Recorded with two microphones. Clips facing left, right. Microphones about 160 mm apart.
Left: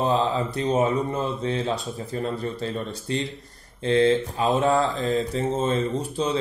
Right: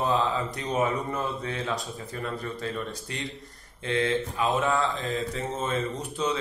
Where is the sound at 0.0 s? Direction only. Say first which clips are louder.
Left 3 dB; 30° left (ahead or behind).